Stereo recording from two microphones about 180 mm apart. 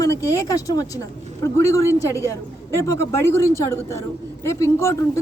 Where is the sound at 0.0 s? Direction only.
20° left (ahead or behind).